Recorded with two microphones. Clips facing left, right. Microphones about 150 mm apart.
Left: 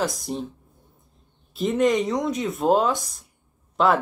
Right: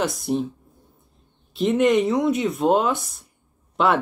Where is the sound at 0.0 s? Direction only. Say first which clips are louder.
Right 4 dB; centre (ahead or behind).